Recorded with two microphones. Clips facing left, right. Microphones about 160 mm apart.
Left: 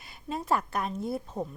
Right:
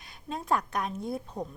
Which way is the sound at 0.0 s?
5° left (ahead or behind).